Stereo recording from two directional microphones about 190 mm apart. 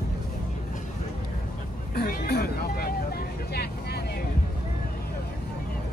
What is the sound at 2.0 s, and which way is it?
Vehicle, 55° left (ahead or behind).